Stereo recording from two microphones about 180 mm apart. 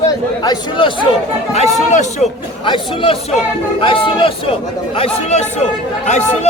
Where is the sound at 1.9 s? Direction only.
40° left (ahead or behind).